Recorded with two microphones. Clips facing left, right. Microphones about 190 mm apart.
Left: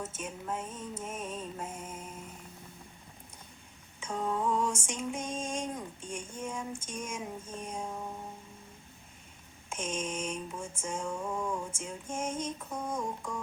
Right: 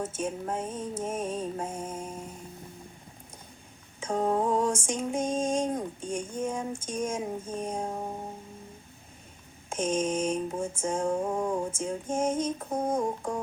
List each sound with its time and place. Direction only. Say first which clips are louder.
0.2 s music: right 6 dB; 40° right (ahead or behind)
4.0 s female singing: right 6 dB; 35° right (ahead or behind)
9.6 s female singing: right 8 dB; 35° right (ahead or behind)